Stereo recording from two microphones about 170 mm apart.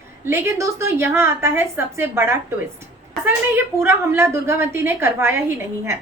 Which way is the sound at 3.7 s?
15° right (ahead or behind).